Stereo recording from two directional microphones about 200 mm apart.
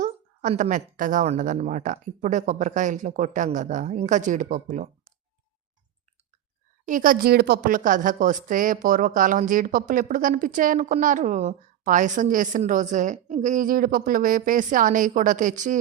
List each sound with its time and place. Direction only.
0.0 s a woman's voice: 40° right (ahead or behind)
6.8 s a woman's voice: 40° right (ahead or behind)